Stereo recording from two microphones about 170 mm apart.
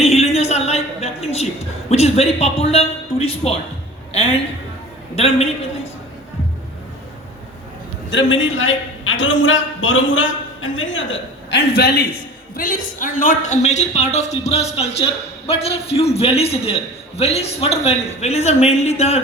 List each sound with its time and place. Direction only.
0.0 s a sound: 40° left (ahead or behind)
1.9 s speech: 40° left (ahead or behind)
8.1 s a man's voice: 90° left; by 12.0 s 70° left (ahead or behind)
12.5 s speech: 55° left (ahead or behind)